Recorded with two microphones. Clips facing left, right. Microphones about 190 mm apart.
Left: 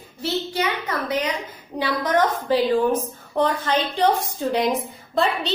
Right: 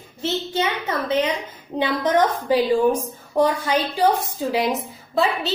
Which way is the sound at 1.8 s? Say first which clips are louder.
Right 2 dB; 15° right (ahead or behind).